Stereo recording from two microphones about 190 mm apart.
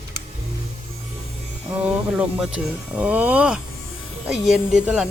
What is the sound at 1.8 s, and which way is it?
Speech, 5° right (ahead or behind).